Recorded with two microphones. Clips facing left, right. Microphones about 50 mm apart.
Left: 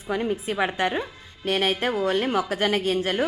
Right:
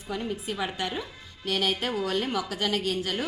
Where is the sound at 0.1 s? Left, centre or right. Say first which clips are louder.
Left 6 dB; left.